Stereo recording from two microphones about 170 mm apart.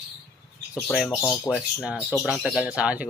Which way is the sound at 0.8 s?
5° left (ahead or behind).